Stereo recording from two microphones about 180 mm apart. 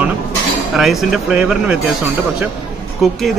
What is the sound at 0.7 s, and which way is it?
Speech, centre (ahead or behind).